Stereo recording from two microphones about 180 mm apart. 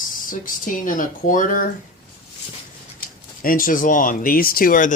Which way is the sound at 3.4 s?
50° left (ahead or behind).